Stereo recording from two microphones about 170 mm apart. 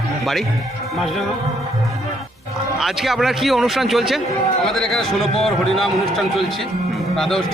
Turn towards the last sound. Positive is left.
turn(degrees=0)  # may be behind; listen again after turning